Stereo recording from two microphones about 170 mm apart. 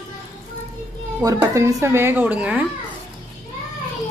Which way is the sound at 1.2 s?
20° right (ahead or behind).